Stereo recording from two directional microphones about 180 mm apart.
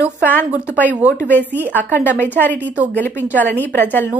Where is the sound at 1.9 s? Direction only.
10° left (ahead or behind).